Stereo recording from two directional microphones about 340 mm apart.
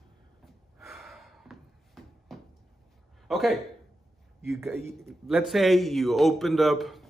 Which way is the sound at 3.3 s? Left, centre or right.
Centre.